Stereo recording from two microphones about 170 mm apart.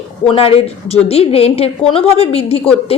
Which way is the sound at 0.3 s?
35° left (ahead or behind).